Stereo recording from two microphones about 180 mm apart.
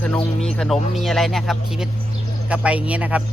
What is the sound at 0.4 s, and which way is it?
Speech, 5° left (ahead or behind).